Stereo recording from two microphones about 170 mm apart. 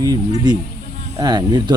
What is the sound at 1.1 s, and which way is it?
Speech, 25° right (ahead or behind).